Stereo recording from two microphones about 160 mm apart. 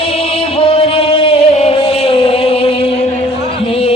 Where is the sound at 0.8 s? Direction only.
35° left (ahead or behind).